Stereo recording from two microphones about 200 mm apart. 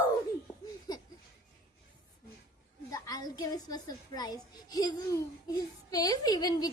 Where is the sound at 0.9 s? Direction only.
20° left (ahead or behind).